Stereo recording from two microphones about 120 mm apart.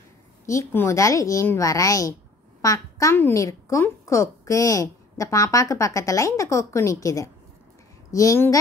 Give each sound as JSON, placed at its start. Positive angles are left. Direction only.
{"t": 0.5, "sound": "a woman's voice", "side_deg": 25}